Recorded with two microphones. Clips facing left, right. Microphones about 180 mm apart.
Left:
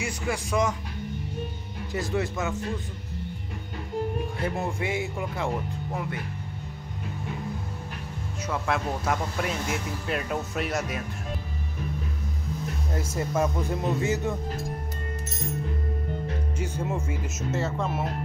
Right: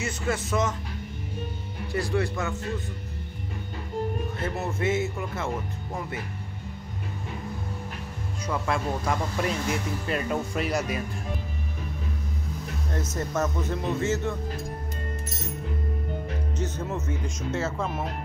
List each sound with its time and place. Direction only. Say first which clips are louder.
0.0 s speech: right 1 dB; 15° left (ahead or behind)
1.9 s speech: right 1 dB; 20° left (ahead or behind)
4.4 s speech: even; 15° left (ahead or behind)
8.5 s speech: even; 5° left (ahead or behind)
12.9 s speech: left 1 dB; 10° left (ahead or behind)
16.5 s speech: even; 10° left (ahead or behind)